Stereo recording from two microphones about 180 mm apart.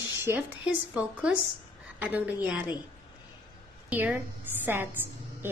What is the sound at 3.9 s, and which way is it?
Speech, 10° right (ahead or behind).